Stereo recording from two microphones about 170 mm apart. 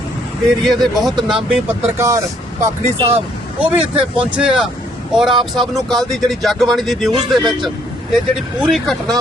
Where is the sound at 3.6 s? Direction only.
5° right (ahead or behind).